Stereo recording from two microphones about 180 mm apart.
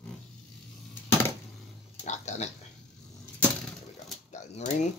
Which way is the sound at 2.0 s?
40° left (ahead or behind).